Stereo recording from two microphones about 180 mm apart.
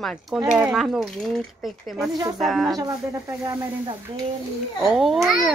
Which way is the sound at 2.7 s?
20° right (ahead or behind).